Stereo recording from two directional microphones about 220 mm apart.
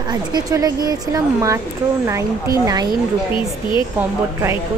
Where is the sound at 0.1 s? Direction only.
15° right (ahead or behind).